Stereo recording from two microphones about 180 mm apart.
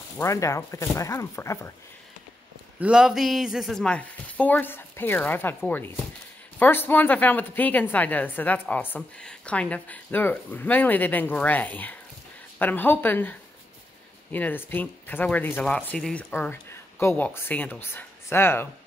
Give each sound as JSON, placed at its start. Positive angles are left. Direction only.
{"t": 0.2, "sound": "a woman's voice", "side_deg": 15}
{"t": 2.8, "sound": "a woman's voice", "side_deg": -5}